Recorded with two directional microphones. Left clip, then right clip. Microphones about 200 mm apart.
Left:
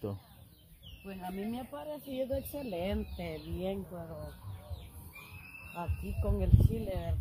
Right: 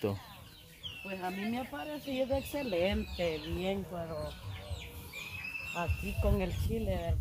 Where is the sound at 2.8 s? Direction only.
40° left (ahead or behind).